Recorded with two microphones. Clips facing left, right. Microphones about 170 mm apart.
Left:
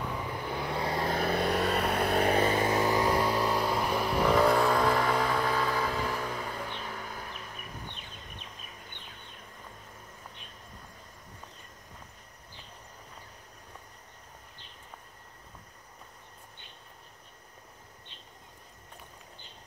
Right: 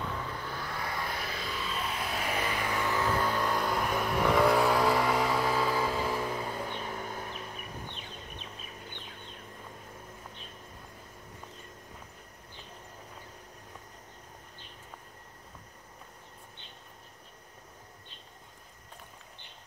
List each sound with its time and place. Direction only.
0.0 s vehicle: 15° left (ahead or behind)
1.0 s vehicle: 50° left (ahead or behind)
2.3 s a sound: 30° left (ahead or behind)
3.4 s vehicle: centre (ahead or behind); by 6.9 s 15° right (ahead or behind)
6.9 s vehicle: 25° right (ahead or behind)